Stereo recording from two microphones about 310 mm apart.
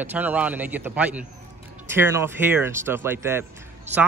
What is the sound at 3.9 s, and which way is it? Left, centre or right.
Speech, right.